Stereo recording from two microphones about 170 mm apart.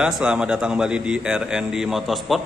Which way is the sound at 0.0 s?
5° right (ahead or behind).